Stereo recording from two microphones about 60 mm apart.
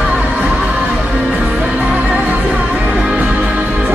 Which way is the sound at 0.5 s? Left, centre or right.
Centre.